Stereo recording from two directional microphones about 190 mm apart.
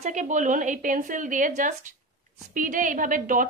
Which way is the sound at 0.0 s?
40° right (ahead or behind).